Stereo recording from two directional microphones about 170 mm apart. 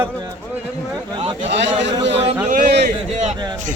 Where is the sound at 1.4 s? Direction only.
90° right.